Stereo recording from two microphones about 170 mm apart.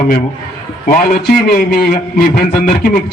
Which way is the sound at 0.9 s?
55° left (ahead or behind).